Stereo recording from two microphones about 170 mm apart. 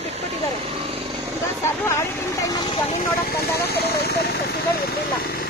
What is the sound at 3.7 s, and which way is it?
Speech, 70° left (ahead or behind).